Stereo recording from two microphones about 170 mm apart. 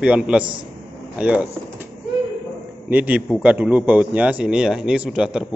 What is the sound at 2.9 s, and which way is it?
Speech, 10° right (ahead or behind).